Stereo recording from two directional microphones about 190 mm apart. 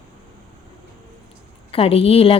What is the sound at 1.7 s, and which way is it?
Speech, 30° left (ahead or behind).